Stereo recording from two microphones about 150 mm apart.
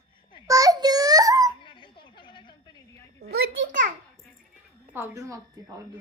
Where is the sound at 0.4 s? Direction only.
25° right (ahead or behind).